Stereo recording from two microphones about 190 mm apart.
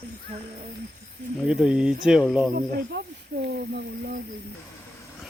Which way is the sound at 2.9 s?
60° right (ahead or behind).